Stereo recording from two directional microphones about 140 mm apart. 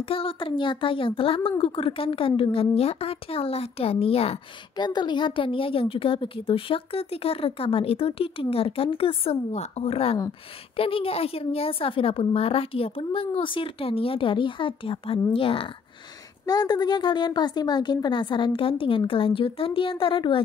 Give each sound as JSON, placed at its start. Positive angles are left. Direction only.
{"t": 0.0, "sound": "a woman's voice", "side_deg": 40}
{"t": 4.7, "sound": "a woman's voice", "side_deg": 30}
{"t": 16.4, "sound": "a woman's voice", "side_deg": 30}